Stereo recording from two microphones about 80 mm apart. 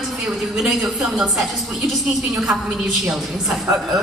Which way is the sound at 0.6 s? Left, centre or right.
Centre.